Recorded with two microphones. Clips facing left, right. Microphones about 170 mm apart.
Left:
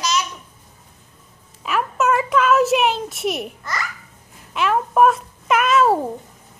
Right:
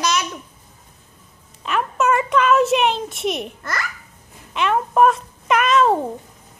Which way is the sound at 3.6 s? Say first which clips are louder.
Right 1 dB; 60° right (ahead or behind).